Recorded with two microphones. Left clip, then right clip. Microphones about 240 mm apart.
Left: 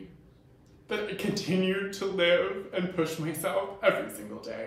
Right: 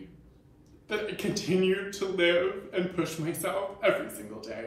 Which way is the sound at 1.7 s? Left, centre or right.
Centre.